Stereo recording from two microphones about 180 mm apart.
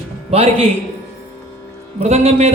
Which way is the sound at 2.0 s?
35° right (ahead or behind).